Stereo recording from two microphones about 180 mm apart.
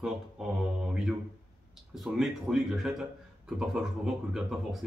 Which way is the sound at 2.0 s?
Centre (ahead or behind).